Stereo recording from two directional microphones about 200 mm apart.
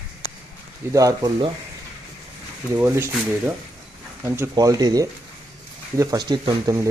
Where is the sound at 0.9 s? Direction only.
15° right (ahead or behind).